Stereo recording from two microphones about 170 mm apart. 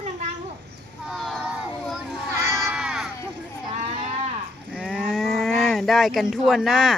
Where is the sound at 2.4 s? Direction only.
15° right (ahead or behind).